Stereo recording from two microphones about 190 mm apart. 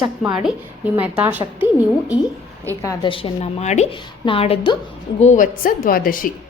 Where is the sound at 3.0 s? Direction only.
25° left (ahead or behind).